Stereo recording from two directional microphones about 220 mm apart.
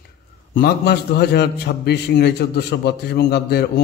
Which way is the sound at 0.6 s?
45° left (ahead or behind).